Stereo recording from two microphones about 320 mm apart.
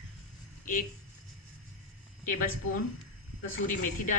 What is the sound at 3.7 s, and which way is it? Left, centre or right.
Speech, left.